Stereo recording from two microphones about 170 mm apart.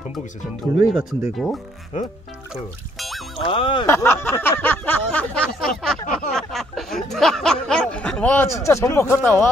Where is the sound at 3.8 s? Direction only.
15° left (ahead or behind).